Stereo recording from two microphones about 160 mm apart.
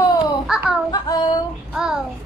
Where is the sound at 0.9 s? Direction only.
25° left (ahead or behind).